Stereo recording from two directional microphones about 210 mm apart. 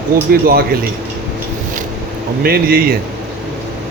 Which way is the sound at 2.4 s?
45° right (ahead or behind).